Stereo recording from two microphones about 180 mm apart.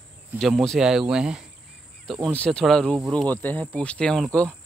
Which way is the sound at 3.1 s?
10° left (ahead or behind).